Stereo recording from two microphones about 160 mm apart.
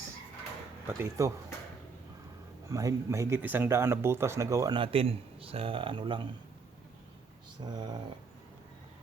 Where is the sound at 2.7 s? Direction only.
20° right (ahead or behind).